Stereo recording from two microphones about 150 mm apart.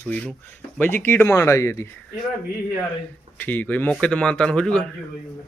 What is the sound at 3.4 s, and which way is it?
A man's voice, 10° left (ahead or behind).